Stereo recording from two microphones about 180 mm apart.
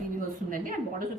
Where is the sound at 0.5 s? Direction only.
50° right (ahead or behind).